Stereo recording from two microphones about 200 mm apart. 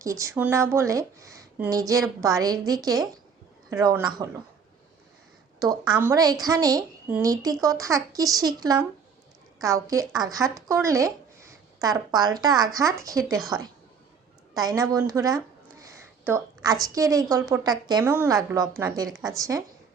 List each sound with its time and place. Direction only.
0.0 s speech: 15° right (ahead or behind)
6.0 s speech: 15° right (ahead or behind)
14.5 s a woman's voice: 20° right (ahead or behind)